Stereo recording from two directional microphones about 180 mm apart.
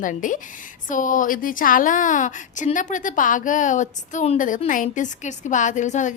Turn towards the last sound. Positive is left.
turn(degrees=40)  # may be behind; listen again after turning